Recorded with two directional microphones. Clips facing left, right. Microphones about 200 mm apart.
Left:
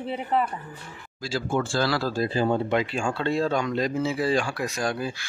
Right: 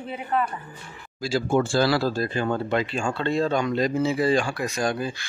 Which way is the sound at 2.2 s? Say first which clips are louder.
Left 2 dB; 30° left (ahead or behind).